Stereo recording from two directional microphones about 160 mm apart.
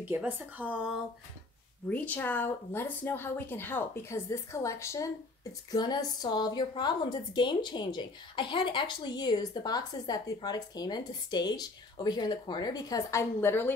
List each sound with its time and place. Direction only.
0.1 s speech: 10° right (ahead or behind)
1.9 s speech: 10° left (ahead or behind)